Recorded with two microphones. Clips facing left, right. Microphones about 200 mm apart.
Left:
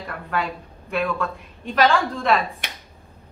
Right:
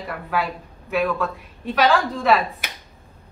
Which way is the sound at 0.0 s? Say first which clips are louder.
Right 2 dB; 5° right (ahead or behind).